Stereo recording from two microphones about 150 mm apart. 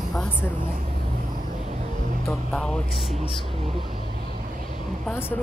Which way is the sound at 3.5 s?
40° right (ahead or behind).